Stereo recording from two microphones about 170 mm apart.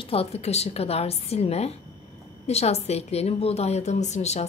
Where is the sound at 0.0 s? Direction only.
35° left (ahead or behind).